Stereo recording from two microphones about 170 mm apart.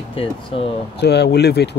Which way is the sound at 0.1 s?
30° left (ahead or behind).